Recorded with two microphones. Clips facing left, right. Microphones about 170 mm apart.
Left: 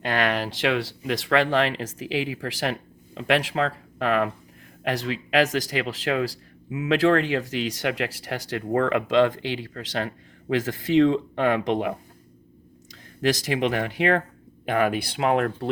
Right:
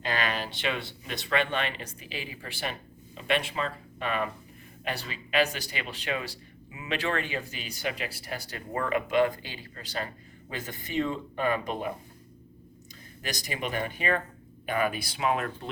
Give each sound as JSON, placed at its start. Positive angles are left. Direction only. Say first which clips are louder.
{"t": 0.0, "sound": "speech", "louder": "left 6 dB", "side_deg": 70}